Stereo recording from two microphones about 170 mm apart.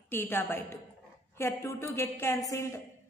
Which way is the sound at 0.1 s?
10° left (ahead or behind).